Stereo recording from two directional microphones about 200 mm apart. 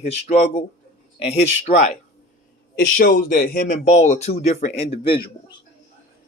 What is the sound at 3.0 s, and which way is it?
Speech, 45° left (ahead or behind).